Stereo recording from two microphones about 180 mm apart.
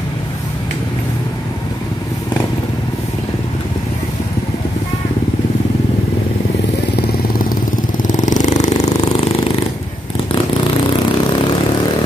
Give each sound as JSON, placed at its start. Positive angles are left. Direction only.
{"t": 8.0, "sound": "vehicle", "side_deg": 45}